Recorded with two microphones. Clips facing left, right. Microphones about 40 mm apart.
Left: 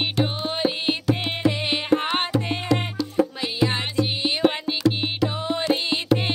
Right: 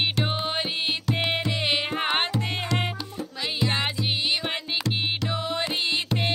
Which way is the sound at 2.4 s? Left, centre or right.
Centre.